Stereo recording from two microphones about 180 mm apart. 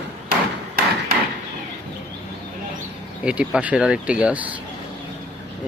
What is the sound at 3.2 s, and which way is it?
Speech, 5° right (ahead or behind).